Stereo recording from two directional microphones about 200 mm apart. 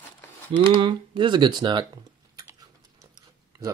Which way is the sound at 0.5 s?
25° right (ahead or behind).